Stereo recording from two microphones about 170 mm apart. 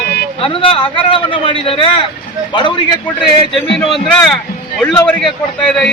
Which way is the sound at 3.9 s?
Centre (ahead or behind).